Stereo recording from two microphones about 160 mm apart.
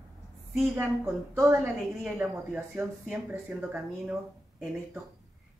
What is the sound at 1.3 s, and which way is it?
Speech, 20° right (ahead or behind).